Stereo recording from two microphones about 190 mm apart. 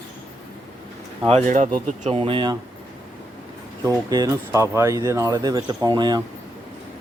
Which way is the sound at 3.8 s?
15° right (ahead or behind).